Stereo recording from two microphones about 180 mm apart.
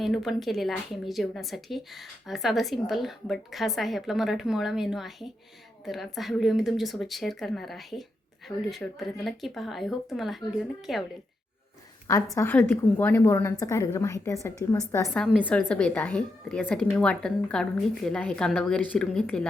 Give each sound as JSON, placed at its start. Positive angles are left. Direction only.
{"t": 0.0, "sound": "speech", "side_deg": 0}
{"t": 12.0, "sound": "a woman's voice", "side_deg": 15}
{"t": 15.1, "sound": "speech", "side_deg": 5}